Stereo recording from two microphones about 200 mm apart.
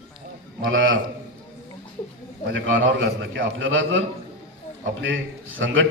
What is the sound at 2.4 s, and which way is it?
A man's voice, 70° right (ahead or behind).